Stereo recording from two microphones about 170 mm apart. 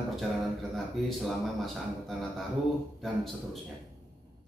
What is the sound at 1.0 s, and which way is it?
A man's voice, centre (ahead or behind).